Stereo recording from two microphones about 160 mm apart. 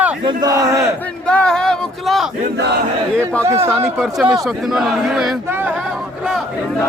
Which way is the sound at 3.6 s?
15° right (ahead or behind).